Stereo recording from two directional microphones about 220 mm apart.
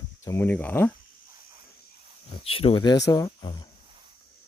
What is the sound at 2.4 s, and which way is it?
Speech, 25° left (ahead or behind).